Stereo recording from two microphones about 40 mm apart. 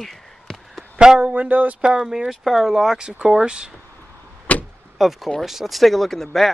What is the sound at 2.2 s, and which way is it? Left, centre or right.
Speech, centre.